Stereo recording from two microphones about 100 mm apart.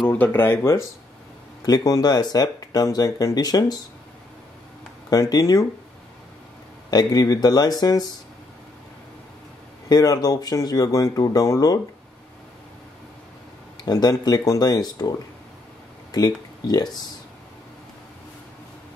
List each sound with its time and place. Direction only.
0.1 s speech: 15° left (ahead or behind)
1.7 s speech: 40° left (ahead or behind)
5.1 s speech: 40° left (ahead or behind)
6.9 s speech: 40° left (ahead or behind)
9.8 s speech: 40° left (ahead or behind)
13.8 s speech: 40° left (ahead or behind)